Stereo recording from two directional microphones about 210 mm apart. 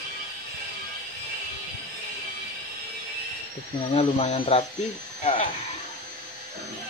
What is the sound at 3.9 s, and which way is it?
Speech, 30° left (ahead or behind).